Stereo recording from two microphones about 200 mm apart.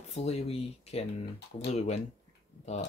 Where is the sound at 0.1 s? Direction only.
30° left (ahead or behind).